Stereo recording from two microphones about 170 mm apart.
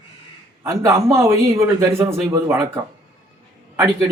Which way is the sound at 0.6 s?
15° right (ahead or behind).